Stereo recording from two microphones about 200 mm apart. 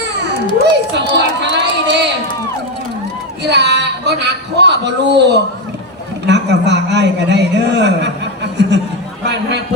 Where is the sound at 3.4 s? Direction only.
60° right (ahead or behind).